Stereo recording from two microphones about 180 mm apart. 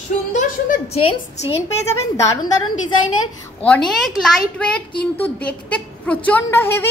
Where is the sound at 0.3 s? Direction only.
40° left (ahead or behind).